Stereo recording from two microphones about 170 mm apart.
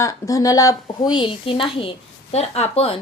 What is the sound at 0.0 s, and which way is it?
A woman's voice, 20° left (ahead or behind).